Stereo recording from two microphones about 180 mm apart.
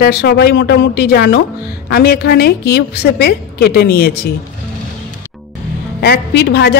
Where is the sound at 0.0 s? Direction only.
65° left (ahead or behind).